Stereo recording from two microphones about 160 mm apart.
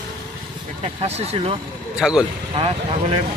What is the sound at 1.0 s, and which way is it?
Speech, 40° right (ahead or behind).